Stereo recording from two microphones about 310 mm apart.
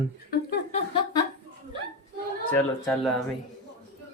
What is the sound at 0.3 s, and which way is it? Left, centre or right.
Chuckle, left.